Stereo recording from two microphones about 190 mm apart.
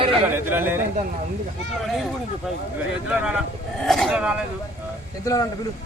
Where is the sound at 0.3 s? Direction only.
10° right (ahead or behind).